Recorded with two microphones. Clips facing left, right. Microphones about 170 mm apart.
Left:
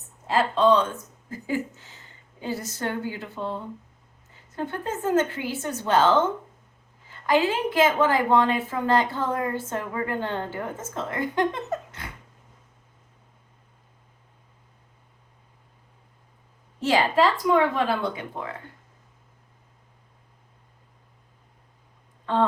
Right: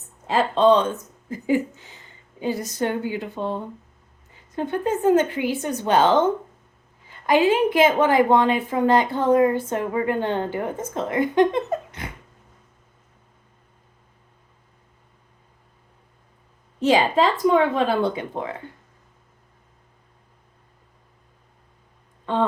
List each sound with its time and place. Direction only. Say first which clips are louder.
0.3 s a woman's voice: right 3 dB; 25° right (ahead or behind)
16.8 s speech: right 3 dB; 20° right (ahead or behind)